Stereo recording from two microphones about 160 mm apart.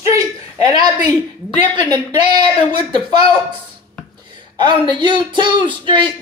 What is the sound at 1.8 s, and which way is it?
Speech, 30° right (ahead or behind).